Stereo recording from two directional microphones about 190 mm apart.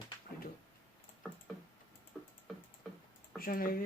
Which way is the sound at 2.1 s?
5° left (ahead or behind).